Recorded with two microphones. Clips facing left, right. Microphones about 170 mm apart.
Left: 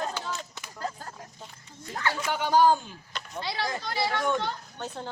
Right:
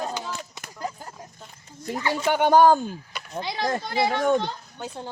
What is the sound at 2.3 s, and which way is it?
Speech, 60° right (ahead or behind).